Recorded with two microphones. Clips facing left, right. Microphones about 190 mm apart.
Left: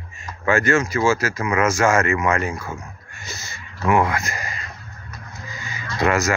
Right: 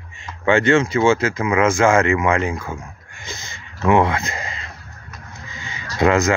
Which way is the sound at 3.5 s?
20° right (ahead or behind).